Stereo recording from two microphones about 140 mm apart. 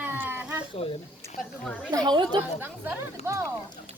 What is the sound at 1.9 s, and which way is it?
Speech, 30° right (ahead or behind).